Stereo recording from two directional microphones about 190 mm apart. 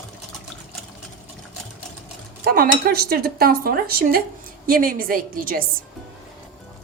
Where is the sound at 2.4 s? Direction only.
50° right (ahead or behind).